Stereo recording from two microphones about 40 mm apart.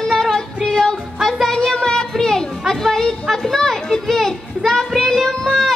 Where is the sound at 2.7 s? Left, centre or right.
Centre.